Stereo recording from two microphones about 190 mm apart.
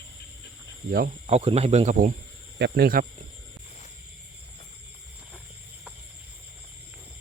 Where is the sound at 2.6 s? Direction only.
60° right (ahead or behind).